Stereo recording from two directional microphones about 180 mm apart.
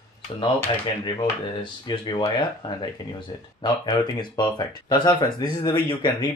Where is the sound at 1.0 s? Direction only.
25° left (ahead or behind).